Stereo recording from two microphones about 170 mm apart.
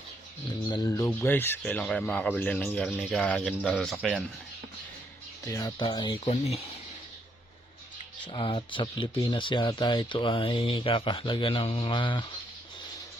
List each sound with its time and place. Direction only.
0.7 s speech: 20° left (ahead or behind); by 3.9 s 5° left (ahead or behind)
5.5 s speech: 20° left (ahead or behind)
6.2 s speech: 40° left (ahead or behind)
8.3 s speech: 30° left (ahead or behind)